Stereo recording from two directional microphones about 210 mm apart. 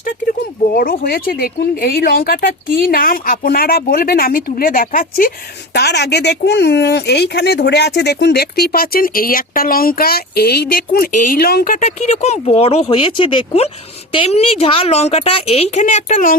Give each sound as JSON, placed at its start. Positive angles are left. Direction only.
{"t": 0.7, "sound": "a woman's voice", "side_deg": 45}